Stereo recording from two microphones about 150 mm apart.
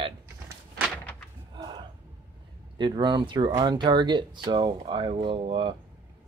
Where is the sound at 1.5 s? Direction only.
25° right (ahead or behind).